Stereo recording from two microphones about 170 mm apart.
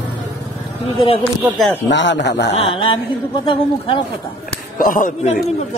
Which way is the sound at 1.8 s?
90° left.